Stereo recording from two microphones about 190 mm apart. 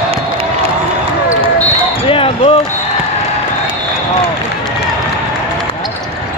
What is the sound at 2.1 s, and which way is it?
Basketball bounce, 30° left (ahead or behind).